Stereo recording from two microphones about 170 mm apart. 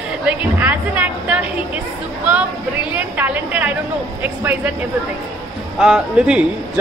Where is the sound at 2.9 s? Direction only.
10° right (ahead or behind).